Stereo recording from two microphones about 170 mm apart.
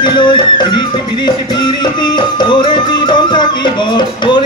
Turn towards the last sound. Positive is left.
turn(degrees=25)  # may be behind; listen again after turning